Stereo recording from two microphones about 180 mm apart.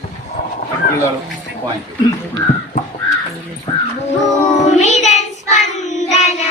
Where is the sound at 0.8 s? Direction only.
55° left (ahead or behind).